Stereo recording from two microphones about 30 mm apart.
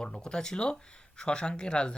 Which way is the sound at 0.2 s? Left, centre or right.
Left.